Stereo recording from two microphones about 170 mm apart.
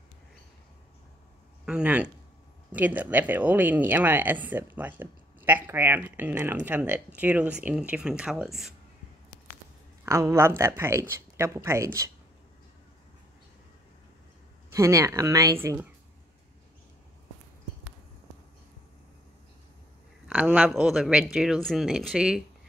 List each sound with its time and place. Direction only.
1.7 s speech: 5° right (ahead or behind)
10.0 s speech: 15° right (ahead or behind)
14.7 s speech: 20° right (ahead or behind)
20.2 s speech: 10° right (ahead or behind)